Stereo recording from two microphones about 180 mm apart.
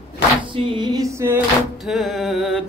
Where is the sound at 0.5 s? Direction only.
25° right (ahead or behind).